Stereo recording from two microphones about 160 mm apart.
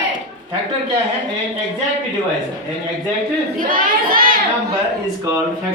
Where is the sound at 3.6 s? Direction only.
60° right (ahead or behind).